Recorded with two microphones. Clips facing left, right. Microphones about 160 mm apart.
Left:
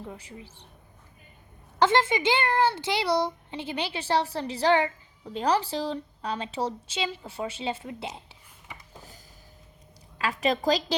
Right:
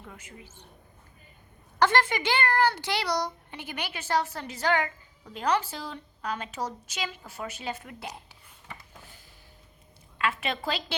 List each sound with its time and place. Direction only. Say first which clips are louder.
0.0 s a woman's voice: left 6 dB; 35° left (ahead or behind)
1.8 s a woman's voice: left 2 dB; 20° left (ahead or behind)
8.9 s a sound: left 3 dB; 40° left (ahead or behind)
10.2 s a woman's voice: left 4 dB; 35° left (ahead or behind)